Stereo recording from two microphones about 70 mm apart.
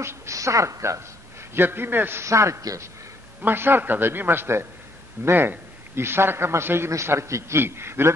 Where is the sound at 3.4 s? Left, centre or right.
Right.